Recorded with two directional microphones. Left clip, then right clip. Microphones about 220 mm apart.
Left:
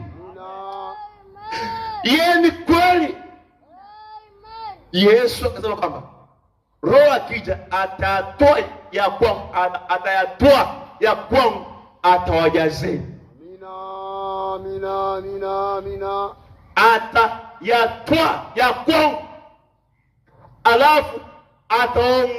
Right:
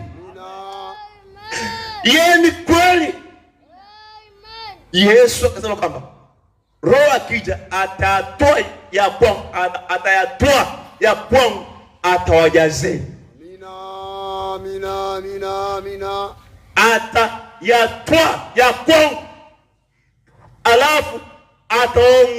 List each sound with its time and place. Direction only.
0.3 s a sound: 20° right (ahead or behind)
2.0 s music: 30° left (ahead or behind)
3.8 s child singing: 30° right (ahead or behind)
4.9 s music: 30° left (ahead or behind)
13.6 s mantra: 20° right (ahead or behind)
16.7 s music: 30° left (ahead or behind)
20.6 s a man's voice: 30° left (ahead or behind)
21.7 s music: 30° left (ahead or behind)